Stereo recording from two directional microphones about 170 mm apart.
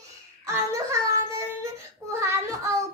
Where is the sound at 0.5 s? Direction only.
15° right (ahead or behind).